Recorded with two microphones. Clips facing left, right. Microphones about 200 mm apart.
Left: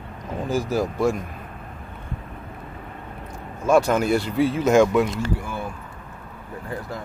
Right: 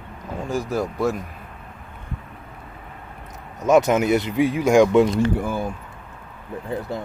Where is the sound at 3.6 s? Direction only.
20° right (ahead or behind).